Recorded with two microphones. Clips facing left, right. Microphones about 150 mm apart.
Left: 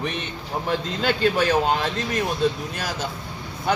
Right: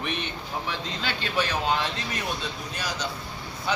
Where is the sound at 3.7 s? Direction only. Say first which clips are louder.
Left 5 dB; 50° left (ahead or behind).